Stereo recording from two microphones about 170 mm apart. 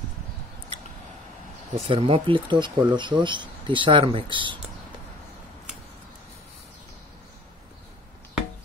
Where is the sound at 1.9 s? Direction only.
35° right (ahead or behind).